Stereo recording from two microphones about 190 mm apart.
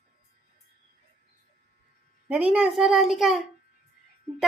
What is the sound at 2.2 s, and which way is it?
A woman's voice, 5° right (ahead or behind).